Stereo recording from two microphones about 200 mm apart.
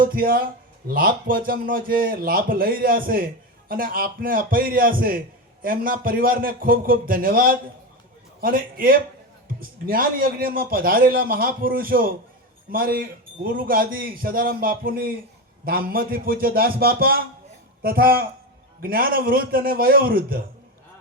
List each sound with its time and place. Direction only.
0.0 s a man's voice: 45° right (ahead or behind)